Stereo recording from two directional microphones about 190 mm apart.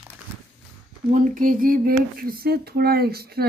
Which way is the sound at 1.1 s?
45° right (ahead or behind).